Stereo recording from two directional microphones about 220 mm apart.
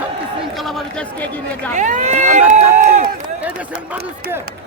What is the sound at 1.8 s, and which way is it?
Speech, 35° right (ahead or behind).